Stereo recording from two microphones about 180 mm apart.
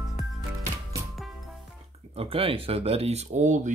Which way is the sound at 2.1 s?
30° right (ahead or behind).